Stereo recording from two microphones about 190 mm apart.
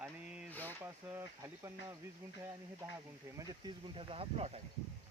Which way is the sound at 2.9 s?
15° right (ahead or behind).